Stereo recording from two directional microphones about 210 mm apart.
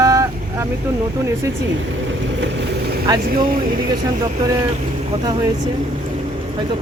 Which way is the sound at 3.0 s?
20° right (ahead or behind).